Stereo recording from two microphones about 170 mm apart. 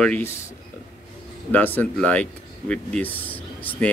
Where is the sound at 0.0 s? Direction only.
10° left (ahead or behind).